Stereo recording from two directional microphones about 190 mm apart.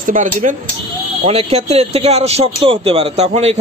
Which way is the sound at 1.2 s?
30° right (ahead or behind).